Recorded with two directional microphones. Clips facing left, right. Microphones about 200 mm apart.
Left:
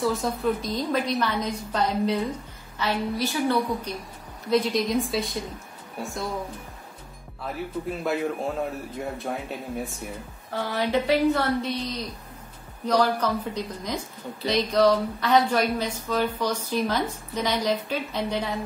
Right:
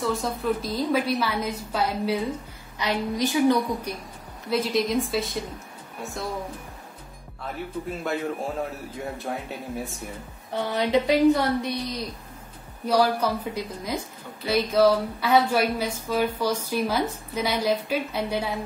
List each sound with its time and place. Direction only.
0.0 s a woman's voice: centre (ahead or behind); by 3.9 s 15° right (ahead or behind)
4.5 s a woman's voice: centre (ahead or behind)
7.4 s a woman's voice: centre (ahead or behind)
10.5 s a woman's voice: 20° right (ahead or behind)